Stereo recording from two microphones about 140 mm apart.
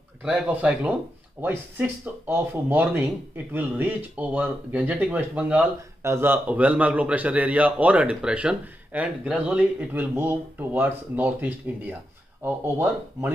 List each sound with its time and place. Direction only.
0.2 s speech: 10° right (ahead or behind)